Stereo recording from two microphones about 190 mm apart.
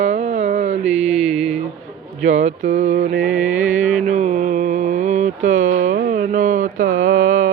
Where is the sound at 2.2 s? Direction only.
35° right (ahead or behind).